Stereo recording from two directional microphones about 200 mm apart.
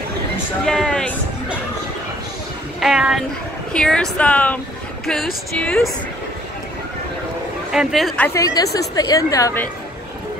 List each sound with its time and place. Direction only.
0.7 s music: 5° left (ahead or behind)
2.8 s speech: 5° right (ahead or behind)
7.7 s speech: centre (ahead or behind)
8.3 s a woman's voice: 15° left (ahead or behind)